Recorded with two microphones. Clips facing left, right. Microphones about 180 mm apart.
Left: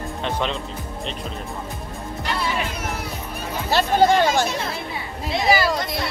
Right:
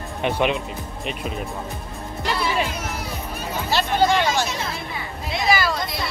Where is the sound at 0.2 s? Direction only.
15° right (ahead or behind).